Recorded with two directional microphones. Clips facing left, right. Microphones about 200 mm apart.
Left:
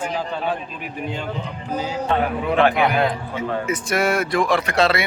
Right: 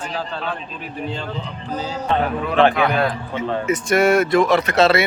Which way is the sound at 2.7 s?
20° left (ahead or behind).